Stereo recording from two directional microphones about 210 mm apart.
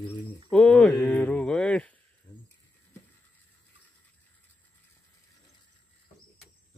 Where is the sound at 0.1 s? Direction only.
5° left (ahead or behind).